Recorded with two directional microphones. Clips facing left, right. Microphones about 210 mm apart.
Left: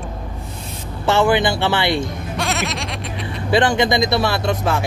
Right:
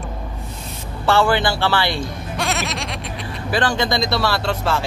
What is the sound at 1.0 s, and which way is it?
Speech, 20° left (ahead or behind).